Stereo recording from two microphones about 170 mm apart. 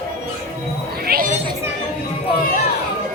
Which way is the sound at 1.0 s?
60° right (ahead or behind).